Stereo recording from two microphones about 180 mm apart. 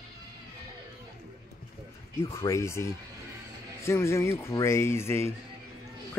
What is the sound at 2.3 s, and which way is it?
Speech, 15° left (ahead or behind).